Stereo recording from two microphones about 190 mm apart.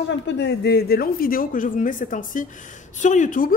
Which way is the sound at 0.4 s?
60° left (ahead or behind).